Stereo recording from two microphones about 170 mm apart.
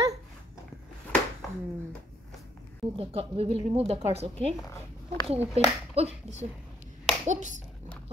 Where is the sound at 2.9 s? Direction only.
35° right (ahead or behind).